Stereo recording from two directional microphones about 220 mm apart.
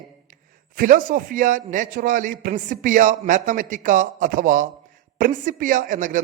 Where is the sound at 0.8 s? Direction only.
35° right (ahead or behind).